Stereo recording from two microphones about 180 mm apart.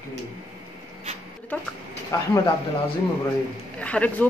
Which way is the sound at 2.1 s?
20° left (ahead or behind).